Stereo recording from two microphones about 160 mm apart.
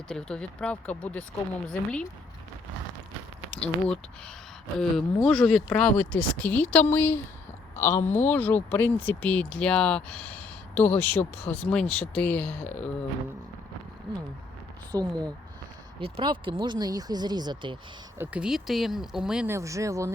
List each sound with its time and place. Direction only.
0.1 s speech: 5° left (ahead or behind)
3.5 s speech: 5° left (ahead or behind)
8.0 s speech: 45° left (ahead or behind)
8.3 s speech: 10° left (ahead or behind)
14.9 s speech: 20° right (ahead or behind)
16.0 s speech: 35° right (ahead or behind)
18.2 s speech: 5° right (ahead or behind)
19.5 s speech: 20° right (ahead or behind)